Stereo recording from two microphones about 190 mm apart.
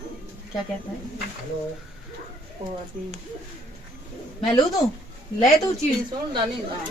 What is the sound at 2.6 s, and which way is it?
Speech, 35° right (ahead or behind).